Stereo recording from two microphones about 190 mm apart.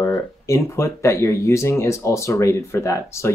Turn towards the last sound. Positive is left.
turn(degrees=15)  # may be behind; listen again after turning